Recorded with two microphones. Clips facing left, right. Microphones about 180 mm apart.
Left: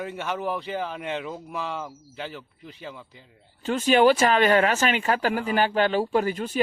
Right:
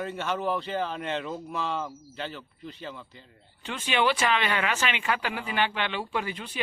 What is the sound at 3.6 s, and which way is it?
Speech, 45° left (ahead or behind).